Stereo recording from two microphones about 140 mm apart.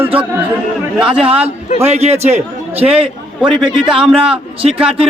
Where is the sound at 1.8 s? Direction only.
50° right (ahead or behind).